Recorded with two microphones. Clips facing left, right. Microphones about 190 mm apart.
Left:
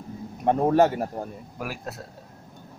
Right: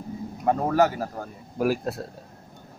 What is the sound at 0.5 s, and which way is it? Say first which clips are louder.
Speech: left 2 dB; 25° left (ahead or behind).